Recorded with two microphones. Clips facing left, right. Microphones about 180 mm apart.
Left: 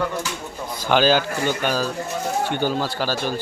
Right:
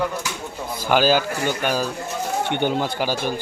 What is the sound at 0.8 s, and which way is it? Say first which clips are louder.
Speech: even; 10° right (ahead or behind).